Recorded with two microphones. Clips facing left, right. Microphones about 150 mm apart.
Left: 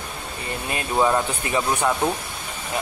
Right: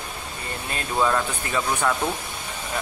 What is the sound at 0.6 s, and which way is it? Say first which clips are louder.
Speech: left 2 dB; 15° left (ahead or behind).